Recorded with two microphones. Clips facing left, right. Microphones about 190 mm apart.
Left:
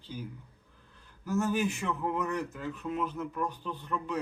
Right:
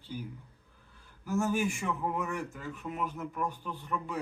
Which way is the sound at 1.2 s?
10° right (ahead or behind).